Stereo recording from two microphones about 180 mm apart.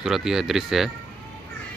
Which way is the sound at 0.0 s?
Centre (ahead or behind).